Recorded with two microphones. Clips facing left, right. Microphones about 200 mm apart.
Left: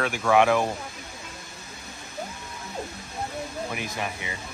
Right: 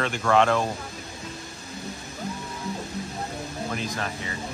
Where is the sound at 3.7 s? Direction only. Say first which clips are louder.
Right 1 dB; 15° left (ahead or behind).